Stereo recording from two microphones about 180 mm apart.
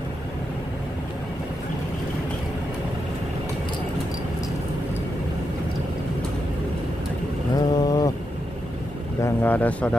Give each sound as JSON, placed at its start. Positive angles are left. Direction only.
{"t": 7.5, "sound": "vehicle", "side_deg": 20}
{"t": 9.2, "sound": "speech", "side_deg": 10}